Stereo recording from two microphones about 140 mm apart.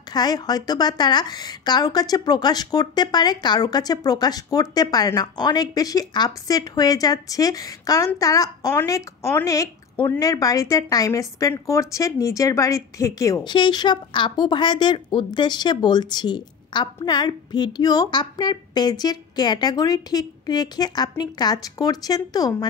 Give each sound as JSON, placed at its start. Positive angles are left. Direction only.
{"t": 0.1, "sound": "speech", "side_deg": 30}